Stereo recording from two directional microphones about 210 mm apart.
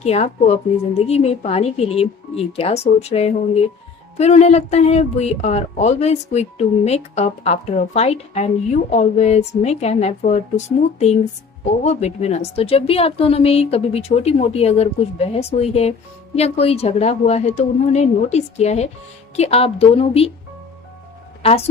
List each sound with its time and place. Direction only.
0.0 s a woman's voice: 30° left (ahead or behind)
21.4 s a woman's voice: 30° left (ahead or behind)